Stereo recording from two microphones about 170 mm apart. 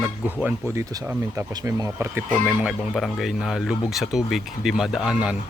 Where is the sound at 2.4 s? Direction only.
5° right (ahead or behind).